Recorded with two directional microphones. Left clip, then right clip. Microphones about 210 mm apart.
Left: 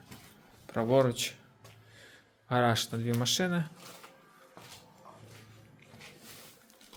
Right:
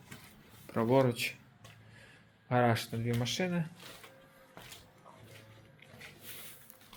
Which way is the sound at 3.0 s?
20° left (ahead or behind).